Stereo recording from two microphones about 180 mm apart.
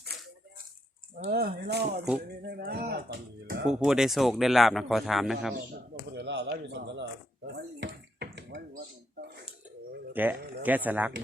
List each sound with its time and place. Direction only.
1.1 s speech: 50° right (ahead or behind)
3.7 s speech: 5° right (ahead or behind)
6.1 s speech: 70° right (ahead or behind)
10.1 s speech: 10° right (ahead or behind)